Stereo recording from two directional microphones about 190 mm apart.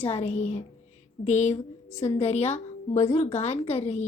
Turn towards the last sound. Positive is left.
turn(degrees=30)  # may be behind; listen again after turning